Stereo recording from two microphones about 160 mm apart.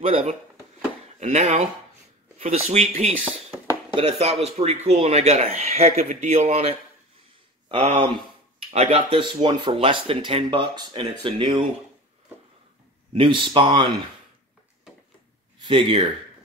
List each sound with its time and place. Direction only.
0.1 s speech: 40° right (ahead or behind)
13.1 s speech: 30° right (ahead or behind)
15.6 s speech: 30° right (ahead or behind)